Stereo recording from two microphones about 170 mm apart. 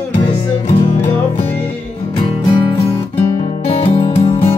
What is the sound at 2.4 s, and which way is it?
Music, 25° left (ahead or behind).